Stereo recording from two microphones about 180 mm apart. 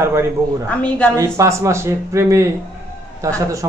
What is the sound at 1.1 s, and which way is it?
A man's voice, 15° right (ahead or behind).